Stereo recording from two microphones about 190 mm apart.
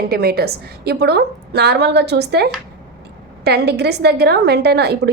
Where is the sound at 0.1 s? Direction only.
55° right (ahead or behind).